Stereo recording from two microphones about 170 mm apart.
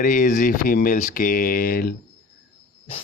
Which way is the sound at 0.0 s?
50° left (ahead or behind).